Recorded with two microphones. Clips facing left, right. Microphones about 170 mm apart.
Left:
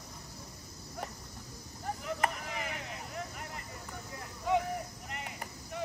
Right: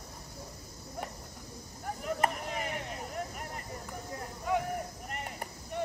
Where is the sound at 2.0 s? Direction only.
40° right (ahead or behind).